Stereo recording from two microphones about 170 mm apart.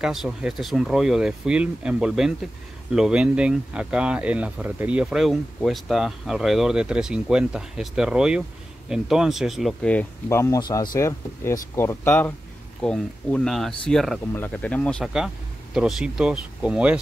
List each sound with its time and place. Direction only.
0.0 s speech: 5° right (ahead or behind)
10.2 s speech: 15° left (ahead or behind); by 17.0 s 5° right (ahead or behind)